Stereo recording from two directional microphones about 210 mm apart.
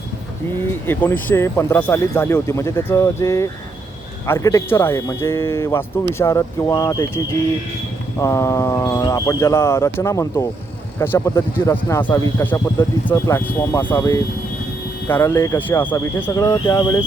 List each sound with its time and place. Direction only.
0.9 s speech: 10° left (ahead or behind)
8.2 s speech: 15° left (ahead or behind)